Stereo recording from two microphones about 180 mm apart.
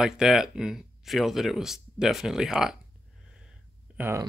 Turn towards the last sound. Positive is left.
turn(degrees=-15)  # may be behind; listen again after turning